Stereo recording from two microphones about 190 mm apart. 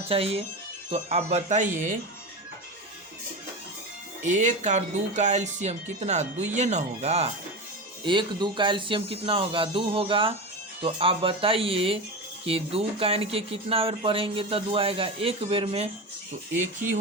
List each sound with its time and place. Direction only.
0.1 s speech: 30° right (ahead or behind)
4.2 s speech: 40° right (ahead or behind)